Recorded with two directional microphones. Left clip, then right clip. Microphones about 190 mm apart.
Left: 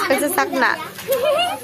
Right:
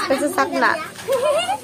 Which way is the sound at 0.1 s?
10° left (ahead or behind).